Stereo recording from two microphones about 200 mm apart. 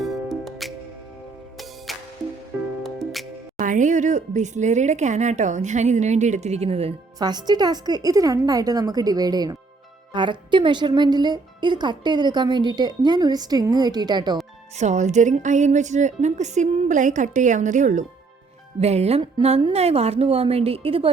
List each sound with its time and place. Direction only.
0.0 s music: centre (ahead or behind)
1.9 s music: centre (ahead or behind)
3.6 s a woman's voice: 40° right (ahead or behind); by 14.3 s 20° right (ahead or behind)
14.8 s a woman's voice: 35° right (ahead or behind)